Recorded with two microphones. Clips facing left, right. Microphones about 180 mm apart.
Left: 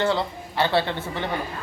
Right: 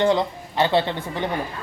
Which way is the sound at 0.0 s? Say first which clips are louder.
Right 4 dB; 15° right (ahead or behind).